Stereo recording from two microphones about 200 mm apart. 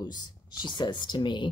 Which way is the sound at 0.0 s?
20° left (ahead or behind).